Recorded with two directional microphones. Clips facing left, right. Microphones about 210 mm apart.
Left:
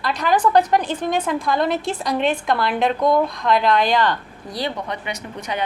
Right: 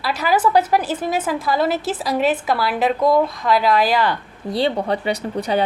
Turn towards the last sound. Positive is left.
turn(degrees=-35)  # may be behind; listen again after turning